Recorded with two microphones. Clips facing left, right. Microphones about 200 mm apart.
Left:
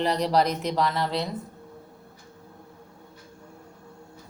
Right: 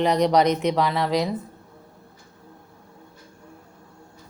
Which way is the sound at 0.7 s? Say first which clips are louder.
Right 3 dB; centre (ahead or behind).